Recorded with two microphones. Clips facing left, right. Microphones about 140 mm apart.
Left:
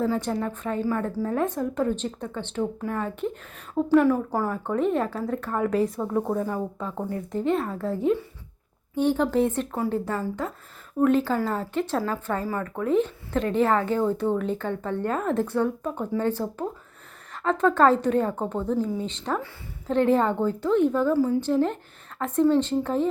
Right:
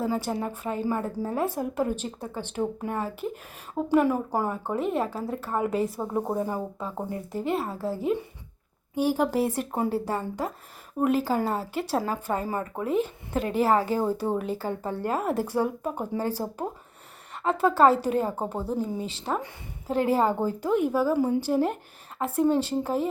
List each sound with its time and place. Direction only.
0.0 s a woman's voice: 10° right (ahead or behind)
2.6 s speech: 25° right (ahead or behind)
3.0 s a woman's voice: 5° right (ahead or behind)
6.1 s a woman's voice: 15° right (ahead or behind)
6.7 s a woman's voice: 5° right (ahead or behind)
11.0 s a woman's voice: 10° right (ahead or behind)
12.9 s a woman's voice: 10° right (ahead or behind)
19.2 s speech: 25° right (ahead or behind)
19.9 s a woman's voice: 5° right (ahead or behind)